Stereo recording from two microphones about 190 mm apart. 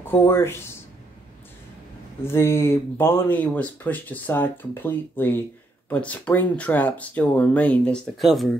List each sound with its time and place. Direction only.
0.0 s speech: 10° left (ahead or behind)
2.2 s speech: 15° left (ahead or behind)